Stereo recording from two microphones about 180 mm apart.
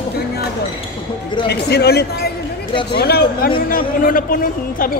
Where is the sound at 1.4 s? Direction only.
65° left (ahead or behind).